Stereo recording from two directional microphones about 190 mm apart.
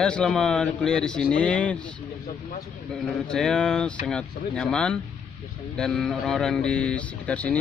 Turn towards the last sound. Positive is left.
turn(degrees=5)  # may be behind; listen again after turning